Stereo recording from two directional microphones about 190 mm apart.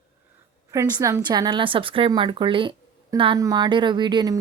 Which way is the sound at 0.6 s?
15° right (ahead or behind).